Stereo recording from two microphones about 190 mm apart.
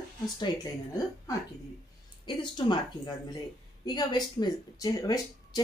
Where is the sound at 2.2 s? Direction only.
25° left (ahead or behind).